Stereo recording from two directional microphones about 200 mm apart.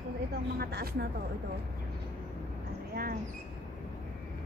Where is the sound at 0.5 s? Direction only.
50° right (ahead or behind).